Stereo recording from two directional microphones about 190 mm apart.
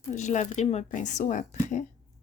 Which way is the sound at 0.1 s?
40° left (ahead or behind).